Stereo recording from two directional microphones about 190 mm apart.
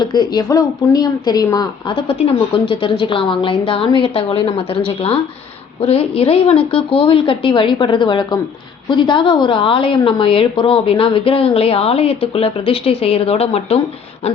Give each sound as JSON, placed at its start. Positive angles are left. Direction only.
{"t": 0.0, "sound": "a woman's voice", "side_deg": 20}